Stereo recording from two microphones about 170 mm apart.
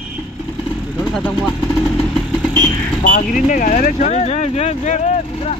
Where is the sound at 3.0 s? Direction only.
50° left (ahead or behind).